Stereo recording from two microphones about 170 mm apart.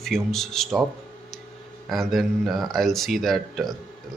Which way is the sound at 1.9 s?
Centre (ahead or behind).